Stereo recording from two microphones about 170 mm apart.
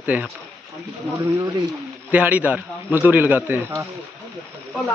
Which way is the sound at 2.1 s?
10° right (ahead or behind).